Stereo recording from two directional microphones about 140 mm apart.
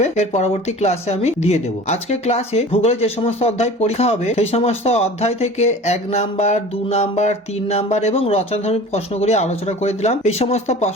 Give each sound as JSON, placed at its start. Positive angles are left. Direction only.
{"t": 0.0, "sound": "speech", "side_deg": 50}